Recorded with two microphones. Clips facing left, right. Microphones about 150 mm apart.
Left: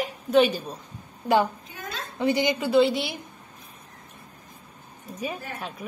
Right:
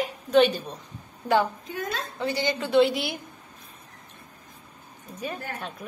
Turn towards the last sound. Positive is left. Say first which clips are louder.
# left 1 dB
turn(degrees=10)  # may be behind; listen again after turning